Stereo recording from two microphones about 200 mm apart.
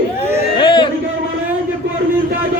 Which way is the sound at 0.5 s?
25° left (ahead or behind).